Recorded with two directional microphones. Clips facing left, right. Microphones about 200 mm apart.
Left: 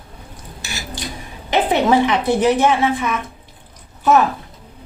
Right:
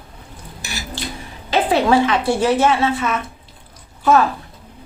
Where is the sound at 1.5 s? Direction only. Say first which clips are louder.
Even; 20° left (ahead or behind).